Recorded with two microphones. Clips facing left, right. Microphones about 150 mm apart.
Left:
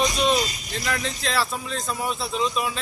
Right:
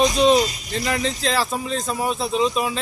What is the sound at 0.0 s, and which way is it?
Speech, 25° right (ahead or behind).